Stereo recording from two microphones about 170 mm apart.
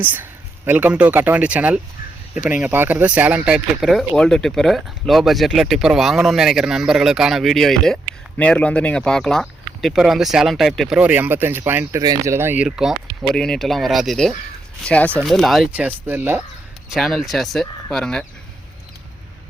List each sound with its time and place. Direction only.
0.0 s speech: 10° right (ahead or behind)
12.6 s speech: centre (ahead or behind)
16.9 s speech: centre (ahead or behind)